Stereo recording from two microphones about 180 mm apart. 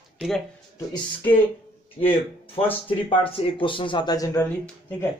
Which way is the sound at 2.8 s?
30° left (ahead or behind).